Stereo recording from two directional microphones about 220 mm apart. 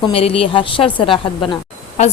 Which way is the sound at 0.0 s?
25° left (ahead or behind).